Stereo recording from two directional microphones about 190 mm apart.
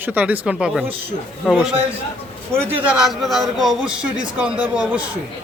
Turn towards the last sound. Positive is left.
turn(degrees=-5)  # may be behind; listen again after turning